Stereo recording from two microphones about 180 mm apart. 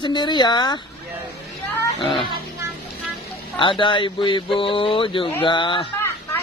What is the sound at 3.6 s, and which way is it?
Speech, 30° left (ahead or behind).